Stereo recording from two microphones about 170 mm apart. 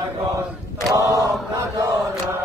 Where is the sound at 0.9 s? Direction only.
20° right (ahead or behind).